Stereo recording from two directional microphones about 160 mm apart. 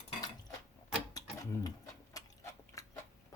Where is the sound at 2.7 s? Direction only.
20° left (ahead or behind).